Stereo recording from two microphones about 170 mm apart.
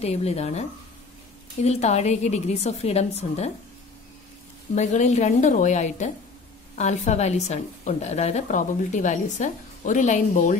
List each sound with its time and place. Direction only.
0.0 s a woman's voice: 40° left (ahead or behind)
4.7 s a woman's voice: 45° left (ahead or behind)